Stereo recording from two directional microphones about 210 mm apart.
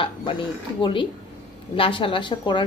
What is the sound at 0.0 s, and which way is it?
A woman's voice, 25° left (ahead or behind).